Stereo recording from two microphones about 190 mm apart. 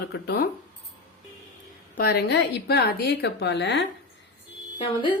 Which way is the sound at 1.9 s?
55° left (ahead or behind).